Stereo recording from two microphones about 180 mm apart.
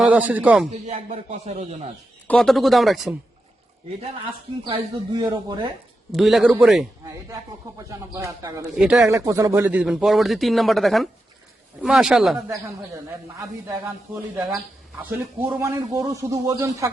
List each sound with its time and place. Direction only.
0.0 s a man's voice: 5° right (ahead or behind)
0.9 s speech: 40° right (ahead or behind)
2.2 s speech: 5° left (ahead or behind)
5.1 s speech: 20° right (ahead or behind)
6.1 s speech: centre (ahead or behind)
7.8 s a man's voice: 20° right (ahead or behind)
8.7 s speech: 5° right (ahead or behind)
9.0 s speech: 15° right (ahead or behind)
13.7 s a man's voice: 10° right (ahead or behind)